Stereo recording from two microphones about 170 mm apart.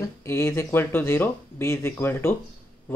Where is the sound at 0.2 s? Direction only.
15° left (ahead or behind).